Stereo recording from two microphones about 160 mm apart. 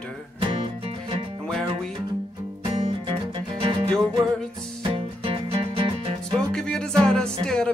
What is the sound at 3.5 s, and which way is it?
Music, 35° right (ahead or behind).